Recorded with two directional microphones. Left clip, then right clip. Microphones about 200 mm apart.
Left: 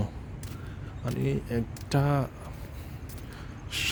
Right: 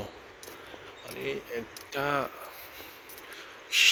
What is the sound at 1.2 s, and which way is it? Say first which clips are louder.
Speech: left 1 dB; 30° left (ahead or behind).